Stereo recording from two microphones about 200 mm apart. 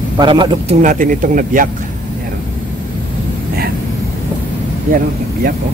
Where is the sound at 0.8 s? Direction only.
40° right (ahead or behind).